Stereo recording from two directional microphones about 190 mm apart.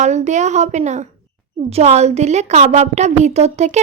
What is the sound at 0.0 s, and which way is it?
A woman's voice, 40° right (ahead or behind).